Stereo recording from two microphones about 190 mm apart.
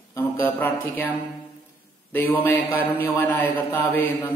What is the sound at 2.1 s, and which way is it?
A man's voice, 10° left (ahead or behind).